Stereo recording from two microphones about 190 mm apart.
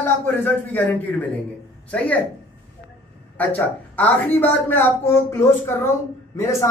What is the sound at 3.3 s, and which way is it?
Speech, 10° left (ahead or behind).